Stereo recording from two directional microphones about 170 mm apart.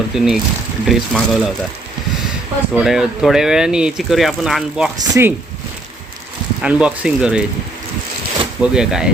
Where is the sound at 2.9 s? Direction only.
Centre (ahead or behind).